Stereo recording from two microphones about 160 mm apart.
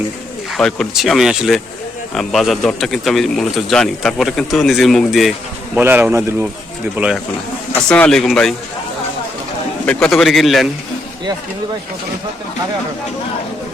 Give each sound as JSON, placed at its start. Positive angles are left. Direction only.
{"t": 0.5, "sound": "speech", "side_deg": 0}
{"t": 5.7, "sound": "speech", "side_deg": -10}
{"t": 7.9, "sound": "speech", "side_deg": 5}
{"t": 9.8, "sound": "speech", "side_deg": 5}